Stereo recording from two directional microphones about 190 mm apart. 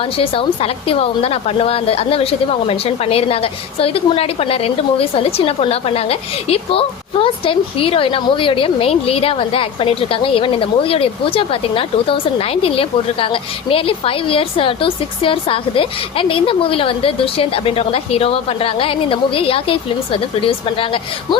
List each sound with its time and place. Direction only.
0.2 s a woman's voice: 30° left (ahead or behind)